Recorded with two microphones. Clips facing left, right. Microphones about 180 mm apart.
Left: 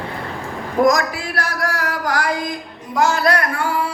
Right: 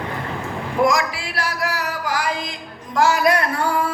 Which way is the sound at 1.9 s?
65° left (ahead or behind).